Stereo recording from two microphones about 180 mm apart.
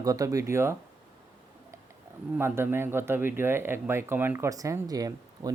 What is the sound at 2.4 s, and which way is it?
Speech, 15° right (ahead or behind).